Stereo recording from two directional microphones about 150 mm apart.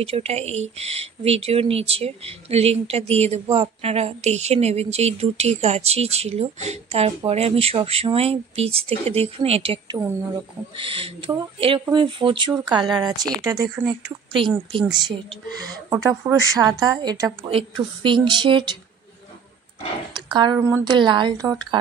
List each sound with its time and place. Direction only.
0.0 s a woman's voice: 40° right (ahead or behind); by 13.9 s 20° right (ahead or behind)
14.3 s speech: 35° right (ahead or behind)
15.9 s a woman's voice: 20° right (ahead or behind)
17.5 s speech: 35° right (ahead or behind)
20.2 s speech: 30° right (ahead or behind)
20.5 s a woman's voice: 15° right (ahead or behind)
20.8 s speech: 30° right (ahead or behind)